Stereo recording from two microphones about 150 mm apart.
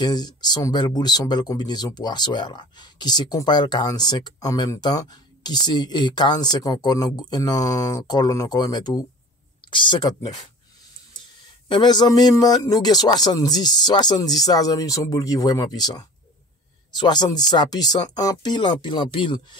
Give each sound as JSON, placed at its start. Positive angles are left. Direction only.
{"t": 0.0, "sound": "speech", "side_deg": 25}
{"t": 11.7, "sound": "speech", "side_deg": 30}